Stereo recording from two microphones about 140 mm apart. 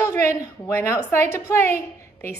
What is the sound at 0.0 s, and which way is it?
A woman's voice, 20° left (ahead or behind).